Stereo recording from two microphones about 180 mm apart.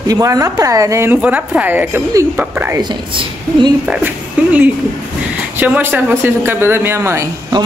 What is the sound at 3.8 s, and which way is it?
A woman's voice, 5° right (ahead or behind).